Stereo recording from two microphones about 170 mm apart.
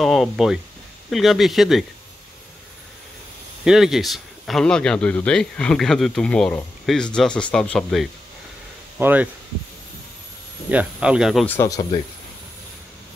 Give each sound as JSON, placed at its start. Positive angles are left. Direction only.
{"t": 0.0, "sound": "speech", "side_deg": 0}
{"t": 3.6, "sound": "speech", "side_deg": 0}
{"t": 9.0, "sound": "speech", "side_deg": -10}
{"t": 10.7, "sound": "speech", "side_deg": -5}
{"t": 11.4, "sound": "speech", "side_deg": 15}